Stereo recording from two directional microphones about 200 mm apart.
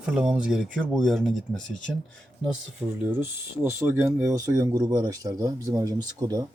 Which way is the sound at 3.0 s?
10° right (ahead or behind).